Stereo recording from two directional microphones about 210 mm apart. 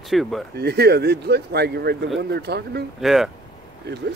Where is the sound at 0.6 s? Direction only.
50° right (ahead or behind).